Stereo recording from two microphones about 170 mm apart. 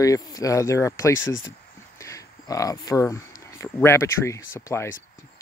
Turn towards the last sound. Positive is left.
turn(degrees=15)  # may be behind; listen again after turning